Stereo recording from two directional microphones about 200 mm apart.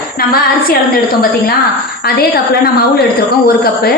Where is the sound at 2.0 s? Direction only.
55° left (ahead or behind).